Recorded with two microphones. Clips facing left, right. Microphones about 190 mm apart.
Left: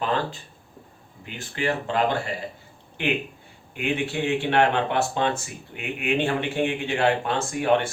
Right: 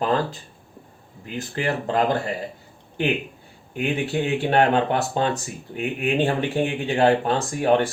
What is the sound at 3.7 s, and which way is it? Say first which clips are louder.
Speech: right 3 dB; 40° right (ahead or behind).